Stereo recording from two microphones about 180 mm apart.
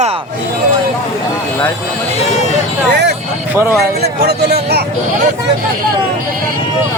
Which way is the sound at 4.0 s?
65° right (ahead or behind).